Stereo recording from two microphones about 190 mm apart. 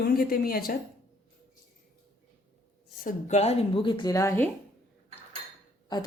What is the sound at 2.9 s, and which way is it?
Speech, 40° left (ahead or behind).